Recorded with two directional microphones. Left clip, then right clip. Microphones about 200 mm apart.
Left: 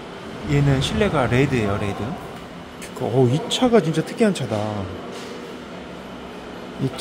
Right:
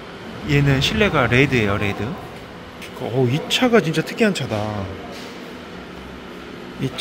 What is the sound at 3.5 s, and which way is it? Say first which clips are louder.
Speech: right 4 dB; 10° left (ahead or behind).